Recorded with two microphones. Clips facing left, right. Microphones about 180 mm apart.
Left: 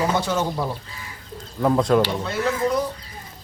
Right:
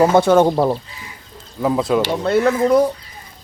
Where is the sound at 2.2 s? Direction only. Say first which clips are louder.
Right 8 dB; 55° right (ahead or behind).